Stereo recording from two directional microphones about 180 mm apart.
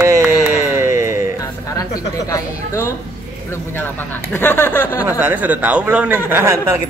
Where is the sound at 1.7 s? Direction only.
20° left (ahead or behind).